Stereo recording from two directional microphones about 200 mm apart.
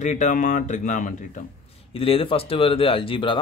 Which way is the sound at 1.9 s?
25° left (ahead or behind).